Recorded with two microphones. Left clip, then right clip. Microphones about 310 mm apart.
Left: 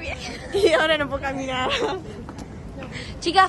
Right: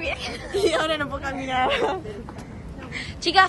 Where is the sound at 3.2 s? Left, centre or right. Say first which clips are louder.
Even; centre.